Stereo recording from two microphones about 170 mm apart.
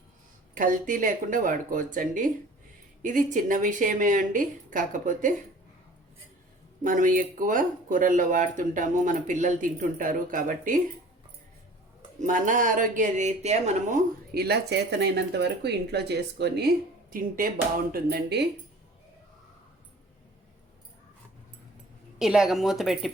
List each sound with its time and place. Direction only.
0.5 s speech: 50° right (ahead or behind)
6.8 s speech: 50° right (ahead or behind)
12.2 s speech: 50° right (ahead or behind)
14.3 s speech: 70° right (ahead or behind)
17.9 s speech: 70° right (ahead or behind)
22.2 s a woman's voice: centre (ahead or behind)